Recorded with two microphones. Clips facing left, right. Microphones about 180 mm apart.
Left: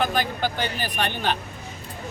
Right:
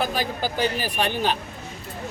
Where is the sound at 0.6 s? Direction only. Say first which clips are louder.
Right 3 dB; 5° right (ahead or behind).